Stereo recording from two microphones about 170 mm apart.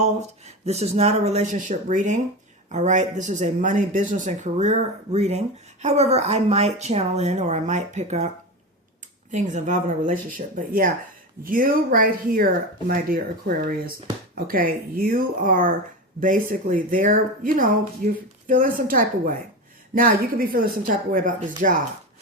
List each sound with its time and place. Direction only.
0.0 s speech: 40° right (ahead or behind)
9.3 s speech: 45° right (ahead or behind)
14.3 s speech: 60° right (ahead or behind)